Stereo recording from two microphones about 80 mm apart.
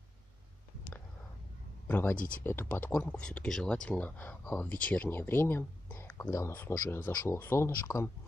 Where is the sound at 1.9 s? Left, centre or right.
Left.